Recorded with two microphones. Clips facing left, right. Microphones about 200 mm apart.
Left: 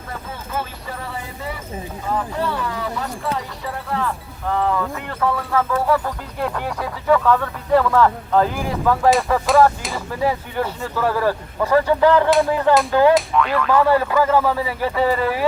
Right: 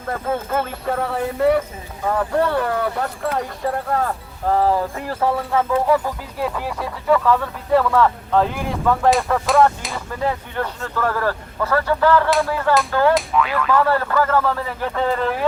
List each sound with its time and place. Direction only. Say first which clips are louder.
0.1 s speech: right 8 dB; 55° right (ahead or behind); by 5.6 s 25° right (ahead or behind)
5.7 s speech: right 3 dB; 15° right (ahead or behind)
6.4 s a man's voice: even; centre (ahead or behind); by 13.1 s 15° left (ahead or behind)
13.1 s speech: left 1 dB; centre (ahead or behind)
13.7 s a man's voice: left 2 dB; 10° left (ahead or behind)